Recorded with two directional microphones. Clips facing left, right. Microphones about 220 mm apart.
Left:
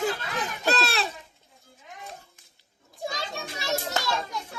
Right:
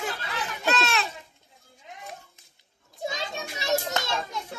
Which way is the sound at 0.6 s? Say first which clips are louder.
Even; 35° left (ahead or behind).